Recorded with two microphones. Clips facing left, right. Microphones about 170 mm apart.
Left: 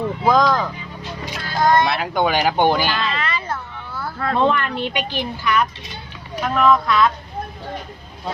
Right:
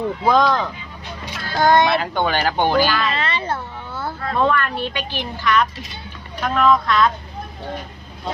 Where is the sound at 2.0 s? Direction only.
10° left (ahead or behind).